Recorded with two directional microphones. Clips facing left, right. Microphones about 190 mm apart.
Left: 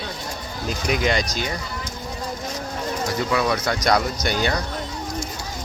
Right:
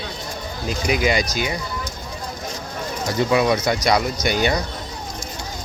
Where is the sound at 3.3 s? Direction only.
15° right (ahead or behind).